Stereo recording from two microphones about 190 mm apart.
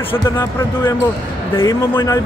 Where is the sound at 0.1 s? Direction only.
10° left (ahead or behind).